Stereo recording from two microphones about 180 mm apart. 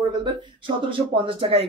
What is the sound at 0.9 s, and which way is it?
Speech, 30° right (ahead or behind).